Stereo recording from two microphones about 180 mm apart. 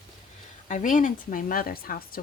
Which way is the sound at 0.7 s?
45° left (ahead or behind).